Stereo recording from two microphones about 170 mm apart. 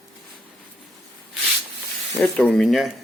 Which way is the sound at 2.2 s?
5° left (ahead or behind).